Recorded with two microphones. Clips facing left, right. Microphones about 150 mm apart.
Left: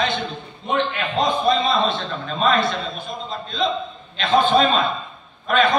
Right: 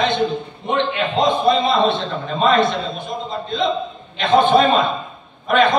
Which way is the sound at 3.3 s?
20° right (ahead or behind).